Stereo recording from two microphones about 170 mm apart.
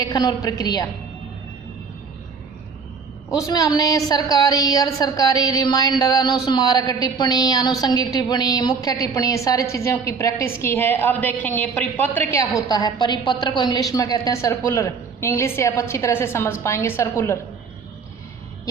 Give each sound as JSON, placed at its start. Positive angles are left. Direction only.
{"t": 0.0, "sound": "a woman's voice", "side_deg": 20}
{"t": 3.2, "sound": "a woman's voice", "side_deg": 20}